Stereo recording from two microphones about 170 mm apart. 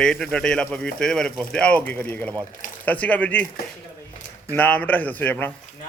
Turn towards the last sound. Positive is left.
turn(degrees=10)  # may be behind; listen again after turning